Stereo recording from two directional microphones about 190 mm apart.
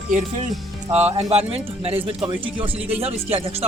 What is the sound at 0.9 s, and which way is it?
Speech, 35° right (ahead or behind).